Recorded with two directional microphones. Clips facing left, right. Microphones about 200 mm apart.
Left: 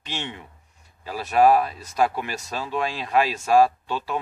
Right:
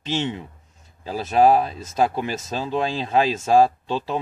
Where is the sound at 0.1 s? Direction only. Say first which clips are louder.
Right 8 dB; 25° right (ahead or behind).